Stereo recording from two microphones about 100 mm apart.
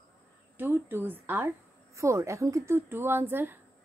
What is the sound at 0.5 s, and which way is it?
A woman's voice, 20° right (ahead or behind).